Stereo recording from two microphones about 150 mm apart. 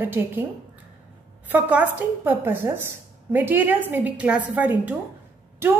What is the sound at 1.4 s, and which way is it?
Speech, 10° right (ahead or behind).